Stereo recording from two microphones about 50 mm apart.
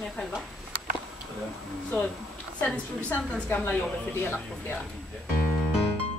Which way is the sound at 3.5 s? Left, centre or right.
Left.